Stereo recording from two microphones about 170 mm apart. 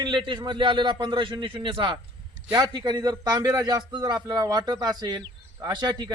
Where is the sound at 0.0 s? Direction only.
25° right (ahead or behind).